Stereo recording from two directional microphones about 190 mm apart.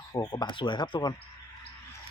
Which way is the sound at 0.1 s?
20° left (ahead or behind).